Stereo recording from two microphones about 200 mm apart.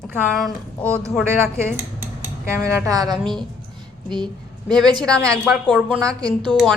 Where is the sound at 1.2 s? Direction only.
15° right (ahead or behind).